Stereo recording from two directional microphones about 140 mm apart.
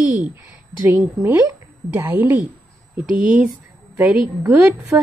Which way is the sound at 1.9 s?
15° right (ahead or behind).